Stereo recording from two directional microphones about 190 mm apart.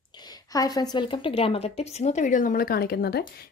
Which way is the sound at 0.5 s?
20° left (ahead or behind).